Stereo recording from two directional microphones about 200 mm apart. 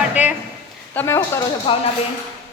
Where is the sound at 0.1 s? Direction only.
5° right (ahead or behind).